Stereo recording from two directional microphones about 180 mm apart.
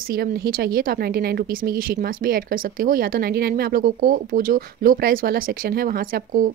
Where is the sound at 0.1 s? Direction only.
55° right (ahead or behind).